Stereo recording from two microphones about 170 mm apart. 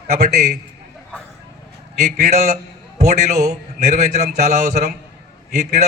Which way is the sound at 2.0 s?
40° right (ahead or behind).